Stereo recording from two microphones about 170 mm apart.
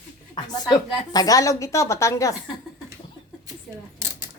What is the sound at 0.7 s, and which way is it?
Speech, 20° left (ahead or behind).